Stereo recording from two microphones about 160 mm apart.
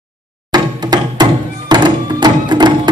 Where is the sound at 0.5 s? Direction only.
25° right (ahead or behind).